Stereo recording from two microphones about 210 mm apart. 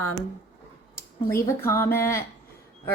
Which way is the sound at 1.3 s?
15° left (ahead or behind).